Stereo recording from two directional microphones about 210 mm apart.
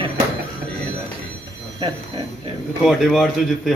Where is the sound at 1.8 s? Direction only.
25° right (ahead or behind).